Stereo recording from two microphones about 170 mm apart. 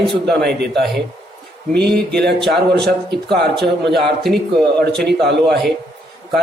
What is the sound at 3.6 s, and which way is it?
Speech, 85° right.